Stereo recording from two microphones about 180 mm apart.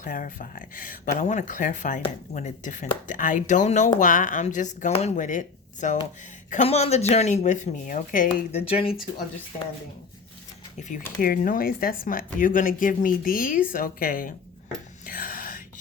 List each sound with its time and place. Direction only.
0.0 s speech: 50° left (ahead or behind)
8.6 s speech: 30° left (ahead or behind)
10.8 s speech: 45° left (ahead or behind)
15.0 s whispering: 50° left (ahead or behind)